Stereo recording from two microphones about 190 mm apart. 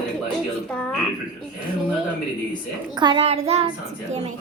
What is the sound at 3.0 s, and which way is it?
Child singing, 25° right (ahead or behind).